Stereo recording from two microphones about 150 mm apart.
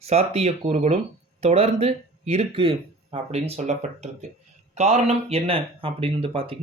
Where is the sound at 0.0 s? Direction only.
45° right (ahead or behind).